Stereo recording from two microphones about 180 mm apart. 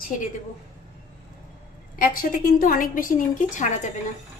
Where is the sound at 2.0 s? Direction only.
50° left (ahead or behind).